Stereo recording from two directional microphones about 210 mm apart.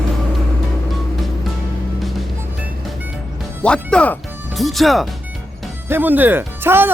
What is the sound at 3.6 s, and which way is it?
Speech, 5° left (ahead or behind).